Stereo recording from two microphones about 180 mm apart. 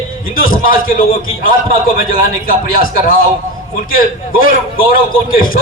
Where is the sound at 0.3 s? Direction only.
50° left (ahead or behind).